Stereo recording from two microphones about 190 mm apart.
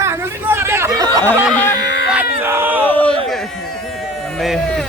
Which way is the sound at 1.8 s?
65° left (ahead or behind).